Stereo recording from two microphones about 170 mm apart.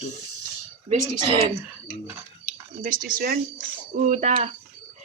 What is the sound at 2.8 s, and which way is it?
Speech, 55° right (ahead or behind).